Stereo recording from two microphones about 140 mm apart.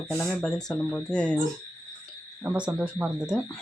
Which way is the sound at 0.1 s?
5° left (ahead or behind).